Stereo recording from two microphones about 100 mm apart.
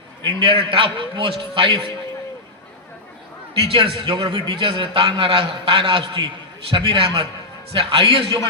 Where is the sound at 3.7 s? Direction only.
60° right (ahead or behind).